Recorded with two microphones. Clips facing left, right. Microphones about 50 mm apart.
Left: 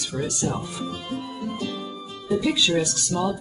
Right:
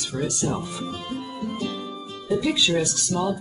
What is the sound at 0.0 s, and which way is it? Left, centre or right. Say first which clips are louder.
Music: right 1 dB; centre.